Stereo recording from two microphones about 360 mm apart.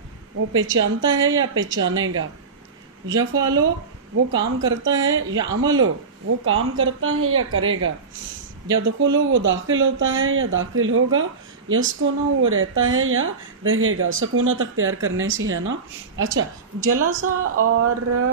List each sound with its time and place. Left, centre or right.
0.6 s speech: right
3.1 s speech: centre
4.6 s speech: right